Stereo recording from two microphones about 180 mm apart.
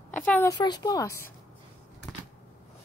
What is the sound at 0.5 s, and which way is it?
Speech, 25° left (ahead or behind).